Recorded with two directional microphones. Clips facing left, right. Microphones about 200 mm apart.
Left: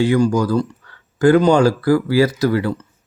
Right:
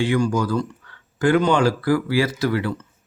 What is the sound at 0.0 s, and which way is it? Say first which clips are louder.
Speech: left 5 dB; 40° left (ahead or behind).